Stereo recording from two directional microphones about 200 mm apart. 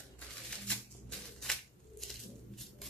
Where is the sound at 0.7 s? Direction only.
Centre (ahead or behind).